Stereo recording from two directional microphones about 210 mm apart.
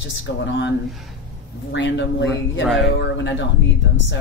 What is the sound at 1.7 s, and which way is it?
Speech, 60° left (ahead or behind).